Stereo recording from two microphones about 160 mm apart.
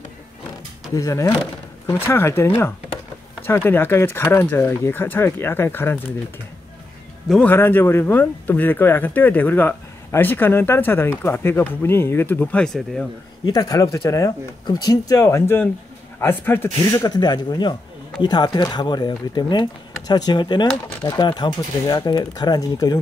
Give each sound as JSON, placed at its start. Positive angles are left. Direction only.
{"t": 0.8, "sound": "speech", "side_deg": 20}
{"t": 7.2, "sound": "speech", "side_deg": 5}
{"t": 13.5, "sound": "speech", "side_deg": 25}